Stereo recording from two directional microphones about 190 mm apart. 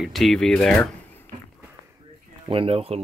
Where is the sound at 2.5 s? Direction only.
30° right (ahead or behind).